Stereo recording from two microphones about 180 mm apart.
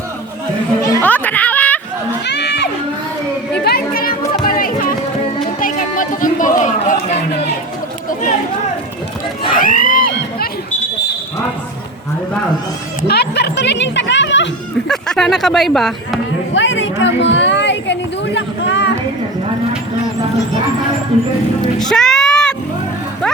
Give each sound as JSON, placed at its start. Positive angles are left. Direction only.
{"t": 0.8, "sound": "children playing", "side_deg": 15}
{"t": 2.2, "sound": "crowd", "side_deg": 70}
{"t": 3.6, "sound": "a sound", "side_deg": 60}
{"t": 4.4, "sound": "music", "side_deg": 50}
{"t": 5.5, "sound": "chatter", "side_deg": 50}
{"t": 9.5, "sound": "a sound", "side_deg": 50}
{"t": 13.1, "sound": "speech", "side_deg": 65}
{"t": 14.8, "sound": "speech", "side_deg": 5}
{"t": 16.6, "sound": "a sound", "side_deg": 90}
{"t": 21.8, "sound": "music", "side_deg": 5}